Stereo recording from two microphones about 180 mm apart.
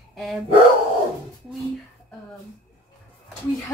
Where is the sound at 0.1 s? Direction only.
Centre (ahead or behind).